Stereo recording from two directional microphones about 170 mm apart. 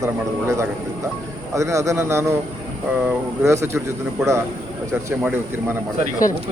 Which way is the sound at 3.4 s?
15° right (ahead or behind).